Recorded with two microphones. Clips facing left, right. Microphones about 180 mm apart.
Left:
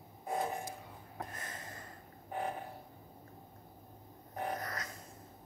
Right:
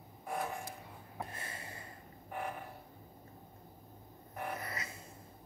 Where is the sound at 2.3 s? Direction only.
30° left (ahead or behind).